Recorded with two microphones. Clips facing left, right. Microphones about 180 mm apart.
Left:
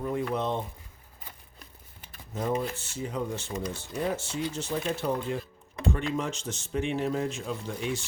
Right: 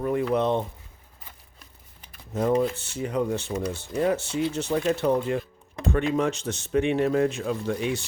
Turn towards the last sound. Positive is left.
turn(degrees=-65)  # may be behind; listen again after turning